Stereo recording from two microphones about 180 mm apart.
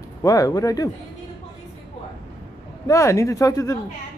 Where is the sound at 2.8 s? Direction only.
15° left (ahead or behind).